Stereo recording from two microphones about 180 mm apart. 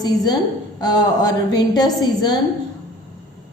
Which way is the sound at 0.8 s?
20° left (ahead or behind).